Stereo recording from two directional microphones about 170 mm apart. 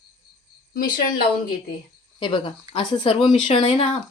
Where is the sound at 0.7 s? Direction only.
60° left (ahead or behind).